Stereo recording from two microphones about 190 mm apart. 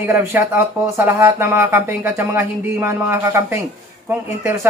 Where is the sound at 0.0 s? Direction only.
15° right (ahead or behind).